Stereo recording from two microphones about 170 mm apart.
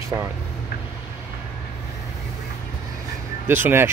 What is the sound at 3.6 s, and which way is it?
Speech, 15° right (ahead or behind).